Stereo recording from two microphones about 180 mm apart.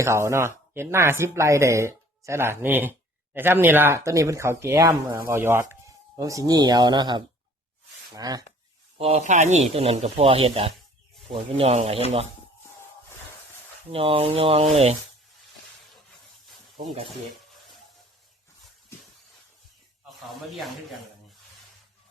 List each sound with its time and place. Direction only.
0.0 s speech: 15° right (ahead or behind)
9.0 s speech: 35° right (ahead or behind)
13.9 s speech: 30° right (ahead or behind)
16.7 s speech: 35° right (ahead or behind)